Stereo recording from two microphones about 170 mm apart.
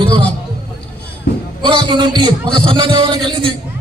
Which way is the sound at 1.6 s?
25° right (ahead or behind).